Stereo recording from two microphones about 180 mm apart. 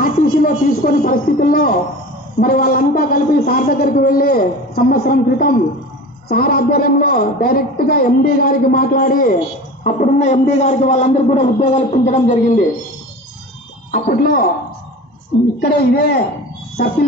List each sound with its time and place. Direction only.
0.0 s a man's voice: 50° left (ahead or behind)
13.9 s a man's voice: 50° left (ahead or behind)
15.6 s a man's voice: 60° left (ahead or behind)